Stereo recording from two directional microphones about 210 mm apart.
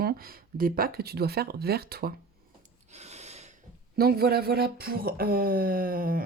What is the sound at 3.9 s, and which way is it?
Speech, 45° right (ahead or behind).